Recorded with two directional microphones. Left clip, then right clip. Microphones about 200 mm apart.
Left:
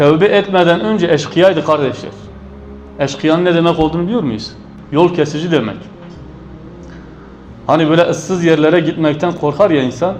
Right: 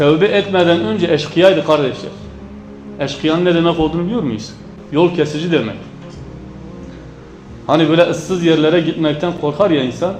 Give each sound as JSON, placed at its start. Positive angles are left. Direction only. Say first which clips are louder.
{"t": 0.0, "sound": "a man's voice", "louder": "left 2 dB", "side_deg": 25}
{"t": 3.0, "sound": "a man's voice", "louder": "left 3 dB", "side_deg": 30}
{"t": 7.7, "sound": "a man's voice", "louder": "left 1 dB", "side_deg": 25}